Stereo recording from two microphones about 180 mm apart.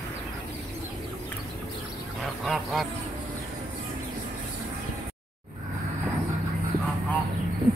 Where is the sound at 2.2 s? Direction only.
Centre (ahead or behind).